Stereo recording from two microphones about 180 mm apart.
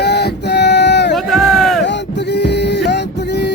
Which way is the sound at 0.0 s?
70° left (ahead or behind).